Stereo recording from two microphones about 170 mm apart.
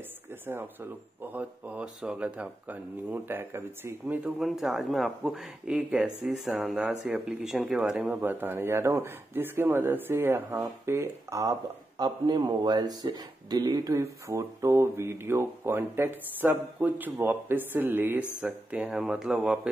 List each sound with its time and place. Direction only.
0.5 s speech: 10° right (ahead or behind)